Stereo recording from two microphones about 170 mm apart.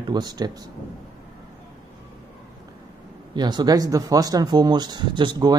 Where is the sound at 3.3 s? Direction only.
25° right (ahead or behind).